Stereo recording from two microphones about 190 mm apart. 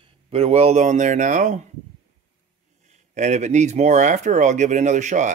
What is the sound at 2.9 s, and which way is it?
Speech, 40° right (ahead or behind).